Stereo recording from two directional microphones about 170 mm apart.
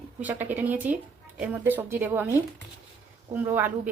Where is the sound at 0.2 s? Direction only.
10° right (ahead or behind).